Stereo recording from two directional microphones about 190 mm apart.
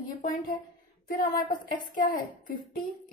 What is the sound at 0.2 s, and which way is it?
Speech, 45° left (ahead or behind).